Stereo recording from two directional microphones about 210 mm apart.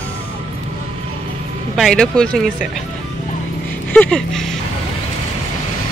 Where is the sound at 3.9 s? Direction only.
5° left (ahead or behind).